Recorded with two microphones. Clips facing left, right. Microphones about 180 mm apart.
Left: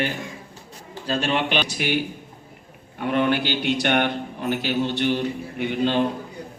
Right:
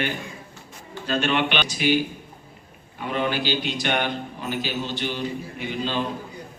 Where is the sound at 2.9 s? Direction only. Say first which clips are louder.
Left 4 dB; 60° left (ahead or behind).